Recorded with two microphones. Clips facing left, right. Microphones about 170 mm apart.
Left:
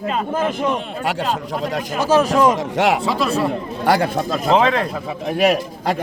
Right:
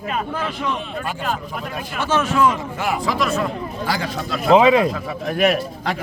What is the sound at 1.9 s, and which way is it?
Speech, 35° left (ahead or behind).